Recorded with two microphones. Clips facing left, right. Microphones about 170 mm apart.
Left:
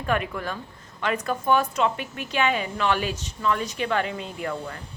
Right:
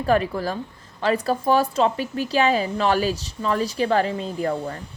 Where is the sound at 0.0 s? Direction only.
35° right (ahead or behind).